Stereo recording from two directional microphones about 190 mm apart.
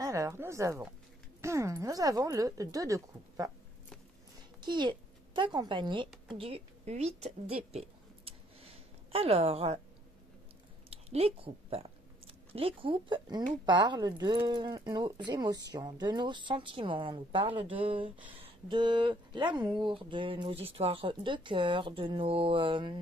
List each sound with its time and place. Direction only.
0.0 s a woman's voice: 15° right (ahead or behind)
4.6 s a woman's voice: 25° right (ahead or behind)
8.3 s a sound: 30° right (ahead or behind)
10.9 s a woman's voice: 35° right (ahead or behind)